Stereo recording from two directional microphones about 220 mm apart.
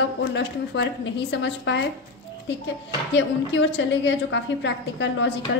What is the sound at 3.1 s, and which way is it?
A woman's voice, 55° left (ahead or behind).